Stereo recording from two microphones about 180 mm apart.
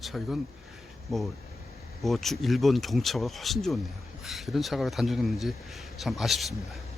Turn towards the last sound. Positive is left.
turn(degrees=0)  # may be behind; listen again after turning